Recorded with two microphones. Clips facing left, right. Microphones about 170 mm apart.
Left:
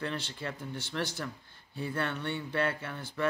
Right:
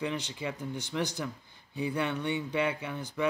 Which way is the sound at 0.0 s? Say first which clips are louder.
Right 3 dB; 15° right (ahead or behind).